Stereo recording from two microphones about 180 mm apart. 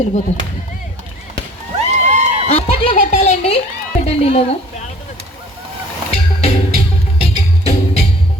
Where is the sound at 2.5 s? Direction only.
35° left (ahead or behind).